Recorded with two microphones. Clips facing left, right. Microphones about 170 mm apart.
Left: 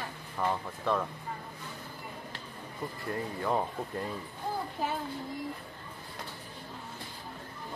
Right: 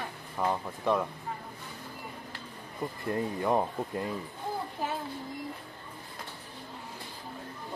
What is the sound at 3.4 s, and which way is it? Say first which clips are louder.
Speech: right 2 dB; 15° right (ahead or behind).